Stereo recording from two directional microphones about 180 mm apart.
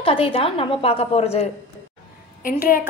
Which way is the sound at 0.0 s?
30° left (ahead or behind).